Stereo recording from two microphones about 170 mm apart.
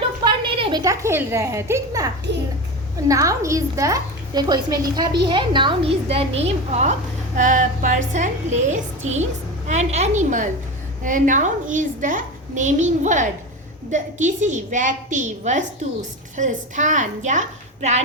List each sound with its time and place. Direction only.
0.4 s a woman's voice: 25° right (ahead or behind)